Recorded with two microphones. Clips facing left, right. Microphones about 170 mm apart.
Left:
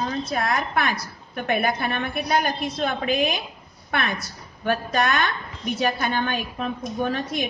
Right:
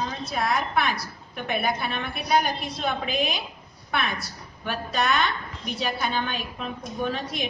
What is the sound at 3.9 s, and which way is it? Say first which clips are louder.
A woman's voice: left 2 dB; 50° left (ahead or behind).